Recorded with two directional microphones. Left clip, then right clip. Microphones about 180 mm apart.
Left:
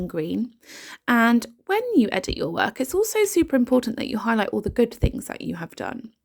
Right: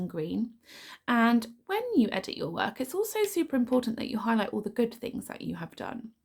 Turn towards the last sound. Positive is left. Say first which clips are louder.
# left 7 dB
turn(degrees=40)  # may be behind; listen again after turning